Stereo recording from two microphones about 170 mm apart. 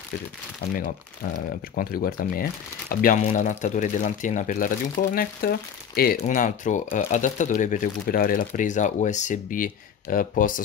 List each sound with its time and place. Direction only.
0.7 s speech: 50° left (ahead or behind)
3.2 s speech: 45° left (ahead or behind); by 6.1 s 65° left (ahead or behind)
6.2 s speech: 50° left (ahead or behind)